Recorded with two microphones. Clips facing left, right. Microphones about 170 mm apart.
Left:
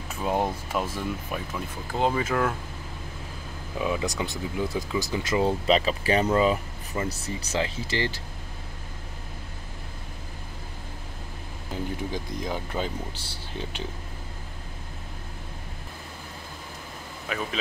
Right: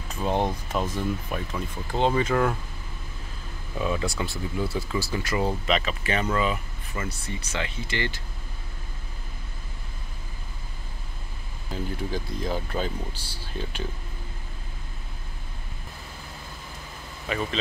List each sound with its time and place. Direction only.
0.1 s speech: 5° left (ahead or behind)
3.7 s speech: 15° left (ahead or behind)
5.7 s speech: 35° left (ahead or behind)
11.7 s speech: 15° left (ahead or behind)
17.3 s speech: 5° left (ahead or behind)